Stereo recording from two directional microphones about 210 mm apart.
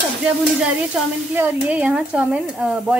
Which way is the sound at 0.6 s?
5° right (ahead or behind).